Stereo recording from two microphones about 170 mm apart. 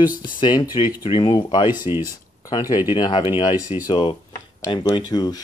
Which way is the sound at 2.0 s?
20° left (ahead or behind).